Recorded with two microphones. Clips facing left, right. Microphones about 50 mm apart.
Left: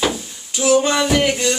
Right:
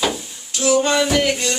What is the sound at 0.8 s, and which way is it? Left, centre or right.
Music, centre.